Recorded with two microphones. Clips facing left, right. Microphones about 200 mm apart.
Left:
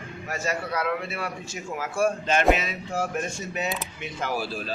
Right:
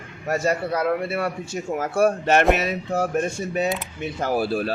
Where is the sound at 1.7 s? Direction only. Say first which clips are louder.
Right 5 dB; 55° right (ahead or behind).